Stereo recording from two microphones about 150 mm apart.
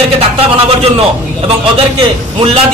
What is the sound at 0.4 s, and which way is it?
Speech, 40° right (ahead or behind).